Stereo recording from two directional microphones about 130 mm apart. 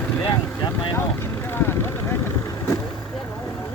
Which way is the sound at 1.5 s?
20° left (ahead or behind).